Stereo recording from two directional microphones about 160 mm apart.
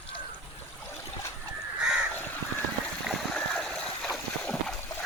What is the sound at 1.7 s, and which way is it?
Crow, 5° right (ahead or behind).